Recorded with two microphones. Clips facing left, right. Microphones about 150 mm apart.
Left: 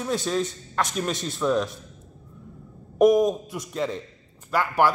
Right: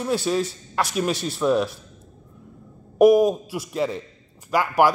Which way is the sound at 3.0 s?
5° right (ahead or behind).